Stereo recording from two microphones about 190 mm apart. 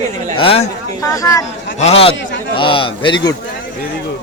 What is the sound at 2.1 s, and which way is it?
Speech, 75° left (ahead or behind).